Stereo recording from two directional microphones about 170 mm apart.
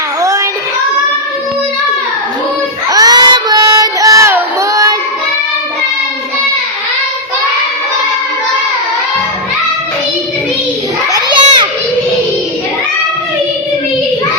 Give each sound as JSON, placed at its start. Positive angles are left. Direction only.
{"t": 0.2, "sound": "child singing", "side_deg": -20}
{"t": 2.9, "sound": "child singing", "side_deg": -20}
{"t": 11.3, "sound": "children playing", "side_deg": -25}